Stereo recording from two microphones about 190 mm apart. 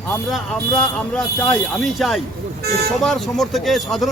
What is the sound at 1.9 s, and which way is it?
Speech, centre (ahead or behind).